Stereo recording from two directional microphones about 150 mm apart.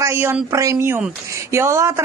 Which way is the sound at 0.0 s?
15° right (ahead or behind).